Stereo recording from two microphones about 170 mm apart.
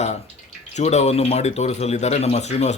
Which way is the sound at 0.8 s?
40° left (ahead or behind).